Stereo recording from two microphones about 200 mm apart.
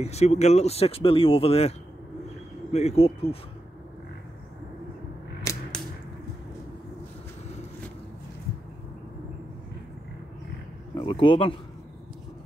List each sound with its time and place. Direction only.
0.0 s speech: 30° left (ahead or behind)
5.5 s a sound: 15° left (ahead or behind)
11.0 s a man's voice: 25° left (ahead or behind)